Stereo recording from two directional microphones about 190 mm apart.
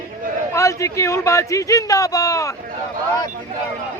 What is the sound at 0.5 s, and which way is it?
Speech, 15° left (ahead or behind).